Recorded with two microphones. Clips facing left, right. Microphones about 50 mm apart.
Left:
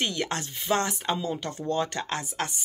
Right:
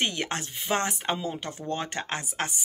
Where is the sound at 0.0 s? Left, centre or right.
Right.